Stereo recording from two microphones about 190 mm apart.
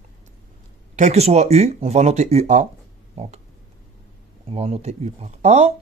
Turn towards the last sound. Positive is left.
turn(degrees=-35)  # may be behind; listen again after turning